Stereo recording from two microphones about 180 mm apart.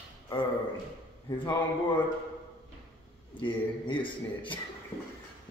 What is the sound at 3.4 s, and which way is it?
A man's voice, 25° left (ahead or behind).